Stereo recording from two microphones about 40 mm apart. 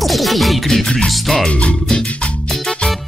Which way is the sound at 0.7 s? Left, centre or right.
Centre.